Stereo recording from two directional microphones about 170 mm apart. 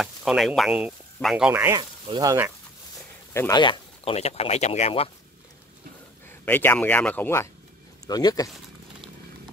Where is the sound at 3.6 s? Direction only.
30° left (ahead or behind).